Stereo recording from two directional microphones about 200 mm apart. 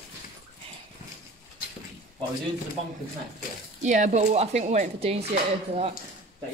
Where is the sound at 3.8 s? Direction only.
35° right (ahead or behind).